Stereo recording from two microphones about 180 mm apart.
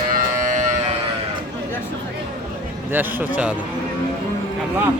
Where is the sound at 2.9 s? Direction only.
10° right (ahead or behind).